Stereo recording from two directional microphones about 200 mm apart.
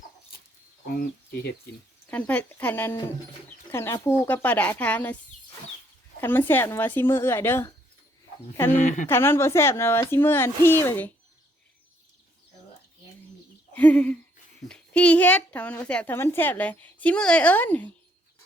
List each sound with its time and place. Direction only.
2.0 s a woman's voice: 10° left (ahead or behind)
6.1 s a woman's voice: 10° left (ahead or behind)
8.8 s speech: 40° left (ahead or behind)
9.0 s a woman's voice: 10° left (ahead or behind)
13.7 s a woman's voice: 5° left (ahead or behind)